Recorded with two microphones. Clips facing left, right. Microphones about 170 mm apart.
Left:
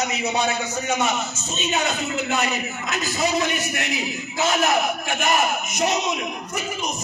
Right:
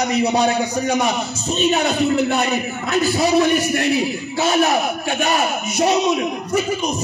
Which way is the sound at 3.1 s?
35° right (ahead or behind).